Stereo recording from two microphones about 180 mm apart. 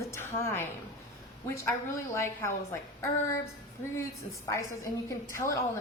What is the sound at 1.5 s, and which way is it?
A woman's voice, 15° left (ahead or behind).